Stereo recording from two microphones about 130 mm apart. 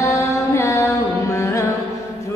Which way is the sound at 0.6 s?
20° left (ahead or behind).